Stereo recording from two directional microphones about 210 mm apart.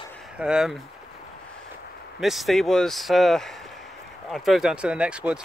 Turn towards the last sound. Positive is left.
turn(degrees=-5)  # may be behind; listen again after turning